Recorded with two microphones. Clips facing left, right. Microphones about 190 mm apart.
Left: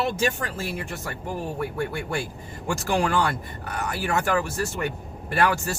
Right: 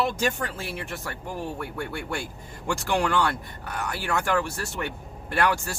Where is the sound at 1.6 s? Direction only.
5° left (ahead or behind).